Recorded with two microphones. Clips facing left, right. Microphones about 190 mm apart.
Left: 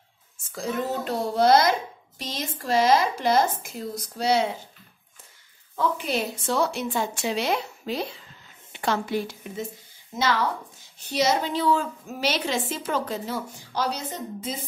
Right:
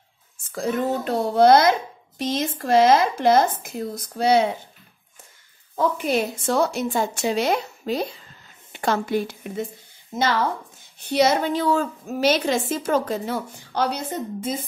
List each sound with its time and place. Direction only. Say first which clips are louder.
0.6 s a child's voice: right 4 dB; 55° right (ahead or behind)
5.8 s a woman's voice: right 4 dB; 50° right (ahead or behind)
11.1 s a woman's voice: right 4 dB; 60° right (ahead or behind)